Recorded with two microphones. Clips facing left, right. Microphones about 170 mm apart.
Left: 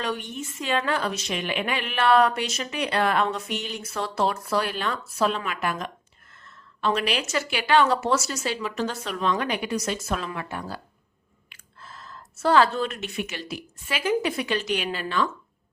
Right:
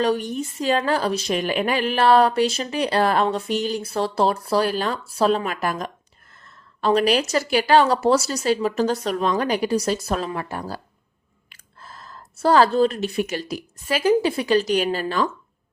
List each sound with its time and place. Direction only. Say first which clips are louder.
0.0 s a woman's voice: right 8 dB; 35° right (ahead or behind)